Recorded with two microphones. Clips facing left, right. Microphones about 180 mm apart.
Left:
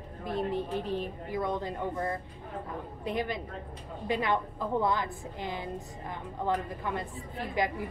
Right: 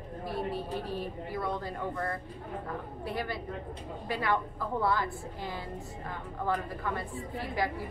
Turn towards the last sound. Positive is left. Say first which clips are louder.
# left 1 dB
turn(degrees=20)  # may be behind; listen again after turning